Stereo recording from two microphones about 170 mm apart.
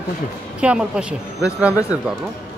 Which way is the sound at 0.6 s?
5° right (ahead or behind).